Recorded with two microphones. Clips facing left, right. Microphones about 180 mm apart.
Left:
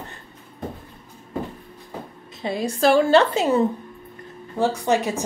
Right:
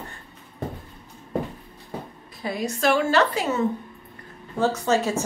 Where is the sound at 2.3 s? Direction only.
25° left (ahead or behind).